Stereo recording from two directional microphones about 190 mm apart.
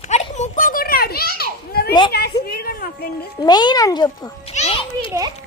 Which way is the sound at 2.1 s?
55° left (ahead or behind).